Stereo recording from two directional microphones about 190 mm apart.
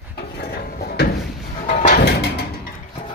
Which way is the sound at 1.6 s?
45° left (ahead or behind).